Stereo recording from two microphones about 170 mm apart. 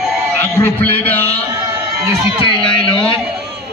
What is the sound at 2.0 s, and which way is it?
Speech, 15° right (ahead or behind).